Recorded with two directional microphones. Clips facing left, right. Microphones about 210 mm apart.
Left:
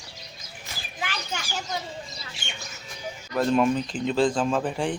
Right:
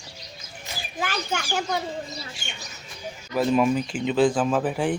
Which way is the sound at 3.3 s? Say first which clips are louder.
Right 1 dB; 5° right (ahead or behind).